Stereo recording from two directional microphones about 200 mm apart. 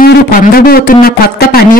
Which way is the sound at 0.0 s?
50° left (ahead or behind).